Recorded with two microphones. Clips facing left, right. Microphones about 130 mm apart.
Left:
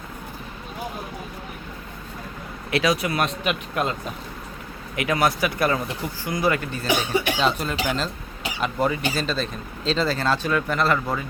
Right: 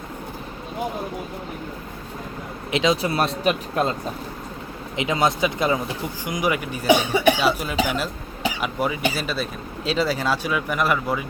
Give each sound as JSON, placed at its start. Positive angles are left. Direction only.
{"t": 2.6, "sound": "speech", "side_deg": -20}
{"t": 4.9, "sound": "speech", "side_deg": -20}